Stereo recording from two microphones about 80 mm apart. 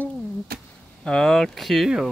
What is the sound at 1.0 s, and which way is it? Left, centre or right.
Speech, centre.